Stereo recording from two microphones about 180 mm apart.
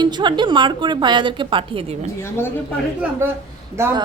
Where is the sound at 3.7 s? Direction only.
15° right (ahead or behind).